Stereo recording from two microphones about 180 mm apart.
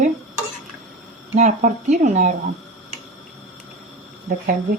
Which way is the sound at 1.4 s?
45° right (ahead or behind).